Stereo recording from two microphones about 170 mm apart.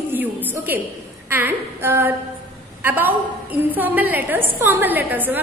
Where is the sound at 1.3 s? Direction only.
15° right (ahead or behind).